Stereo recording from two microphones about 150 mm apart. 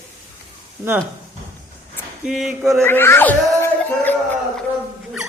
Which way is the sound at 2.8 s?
15° left (ahead or behind).